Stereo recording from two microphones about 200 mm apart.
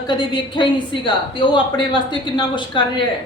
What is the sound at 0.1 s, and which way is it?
A woman's voice, 25° left (ahead or behind).